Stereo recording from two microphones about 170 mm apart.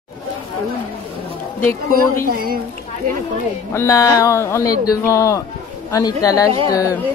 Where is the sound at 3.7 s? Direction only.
20° left (ahead or behind).